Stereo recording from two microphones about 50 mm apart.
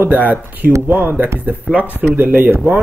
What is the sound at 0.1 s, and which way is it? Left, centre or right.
Speech, right.